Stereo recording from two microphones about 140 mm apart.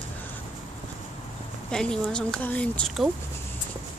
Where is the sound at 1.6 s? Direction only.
5° left (ahead or behind).